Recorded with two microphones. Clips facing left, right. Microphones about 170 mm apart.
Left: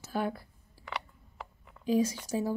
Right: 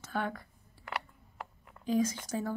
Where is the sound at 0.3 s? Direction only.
35° left (ahead or behind).